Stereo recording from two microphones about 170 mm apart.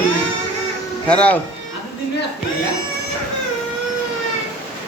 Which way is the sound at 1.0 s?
5° left (ahead or behind).